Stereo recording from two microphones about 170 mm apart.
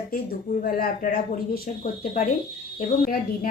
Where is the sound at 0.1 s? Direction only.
60° left (ahead or behind).